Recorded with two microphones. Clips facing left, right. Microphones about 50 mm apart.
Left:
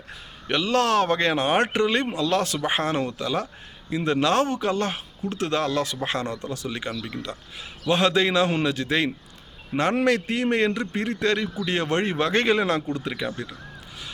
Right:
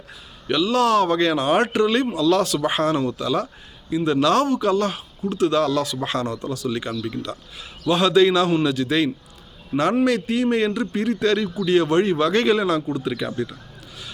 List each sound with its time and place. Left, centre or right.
0.1 s speech: left
13.2 s speech: centre